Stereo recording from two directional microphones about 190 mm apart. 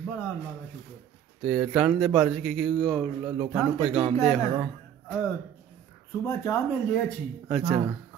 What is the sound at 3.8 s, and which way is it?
Speech, 30° right (ahead or behind).